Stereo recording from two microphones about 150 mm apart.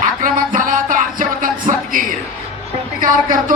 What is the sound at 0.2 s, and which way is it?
Music, 65° right (ahead or behind).